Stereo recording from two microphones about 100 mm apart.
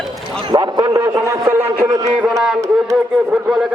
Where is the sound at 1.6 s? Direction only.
15° right (ahead or behind).